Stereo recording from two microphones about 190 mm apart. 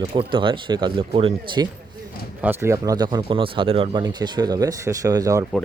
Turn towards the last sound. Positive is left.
turn(degrees=-20)  # may be behind; listen again after turning